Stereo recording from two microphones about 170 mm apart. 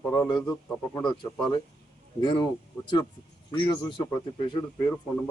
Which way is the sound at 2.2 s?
25° left (ahead or behind).